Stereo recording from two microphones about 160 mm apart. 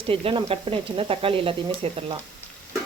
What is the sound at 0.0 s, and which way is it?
Speech, 35° right (ahead or behind).